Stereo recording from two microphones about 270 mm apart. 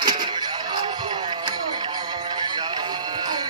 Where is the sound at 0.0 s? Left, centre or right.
Centre.